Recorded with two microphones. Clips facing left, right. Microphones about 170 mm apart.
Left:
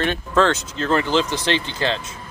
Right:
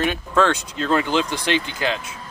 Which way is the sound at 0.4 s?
15° right (ahead or behind).